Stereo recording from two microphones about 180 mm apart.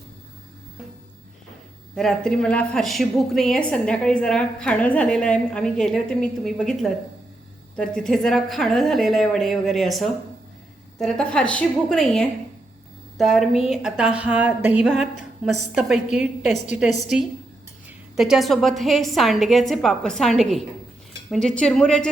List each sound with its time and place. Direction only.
2.0 s a woman's voice: centre (ahead or behind)
14.9 s a woman's voice: 40° left (ahead or behind)
15.7 s a woman's voice: 5° right (ahead or behind)